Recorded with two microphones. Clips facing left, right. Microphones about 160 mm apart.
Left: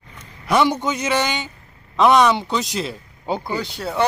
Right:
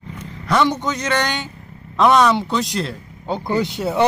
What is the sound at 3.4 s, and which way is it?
Speech, 20° right (ahead or behind).